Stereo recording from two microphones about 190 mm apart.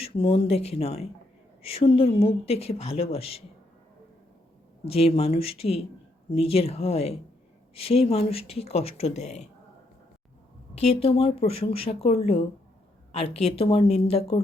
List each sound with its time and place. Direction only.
0.2 s speech: 30° left (ahead or behind)
4.9 s speech: 30° left (ahead or behind)
10.8 s speech: 30° left (ahead or behind)